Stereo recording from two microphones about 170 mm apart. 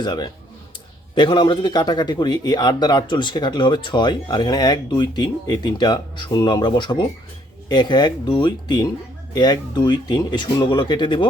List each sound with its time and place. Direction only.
0.0 s a man's voice: 25° left (ahead or behind)